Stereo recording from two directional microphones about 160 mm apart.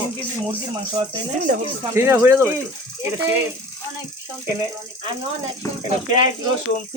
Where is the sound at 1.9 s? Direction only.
15° right (ahead or behind).